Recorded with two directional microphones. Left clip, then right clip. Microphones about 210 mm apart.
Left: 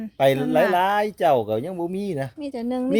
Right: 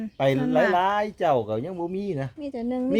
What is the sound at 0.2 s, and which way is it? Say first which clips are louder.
Speech: left 3 dB; 45° left (ahead or behind).